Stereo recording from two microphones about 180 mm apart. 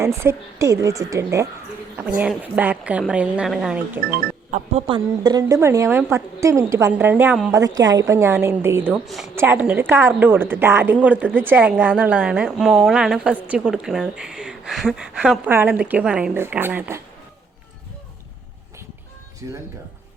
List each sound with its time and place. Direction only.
0.0 s a woman's voice: 15° right (ahead or behind)
4.5 s speech: 35° right (ahead or behind)
4.9 s a woman's voice: 20° right (ahead or behind)
7.8 s a woman's voice: 20° right (ahead or behind)
8.9 s speech: centre (ahead or behind)
9.3 s a woman's voice: 10° right (ahead or behind)
19.4 s a woman's voice: 20° right (ahead or behind)